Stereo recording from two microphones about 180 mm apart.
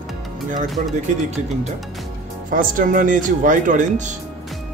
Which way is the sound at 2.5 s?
50° right (ahead or behind).